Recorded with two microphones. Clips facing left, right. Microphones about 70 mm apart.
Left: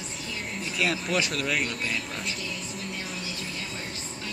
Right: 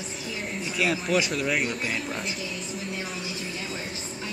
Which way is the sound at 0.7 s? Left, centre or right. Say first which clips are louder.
Right 2 dB; centre.